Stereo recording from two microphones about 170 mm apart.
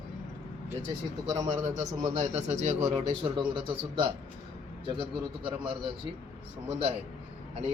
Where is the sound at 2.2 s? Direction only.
45° right (ahead or behind).